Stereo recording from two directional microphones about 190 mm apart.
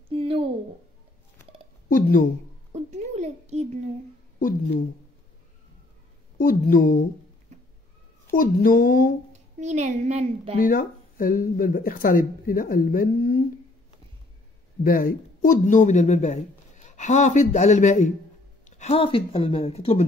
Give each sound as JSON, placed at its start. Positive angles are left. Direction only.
{"t": 0.1, "sound": "a sound", "side_deg": -30}
{"t": 1.9, "sound": "speech", "side_deg": 45}
{"t": 2.7, "sound": "a sound", "side_deg": -35}
{"t": 4.4, "sound": "speech", "side_deg": 45}
{"t": 6.3, "sound": "speech", "side_deg": 50}
{"t": 8.3, "sound": "speech", "side_deg": 50}
{"t": 9.3, "sound": "a woman's voice", "side_deg": -35}
{"t": 10.6, "sound": "speech", "side_deg": 50}
{"t": 14.8, "sound": "speech", "side_deg": 50}